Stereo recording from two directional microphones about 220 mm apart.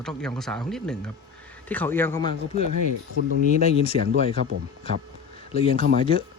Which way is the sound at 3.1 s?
65° right (ahead or behind).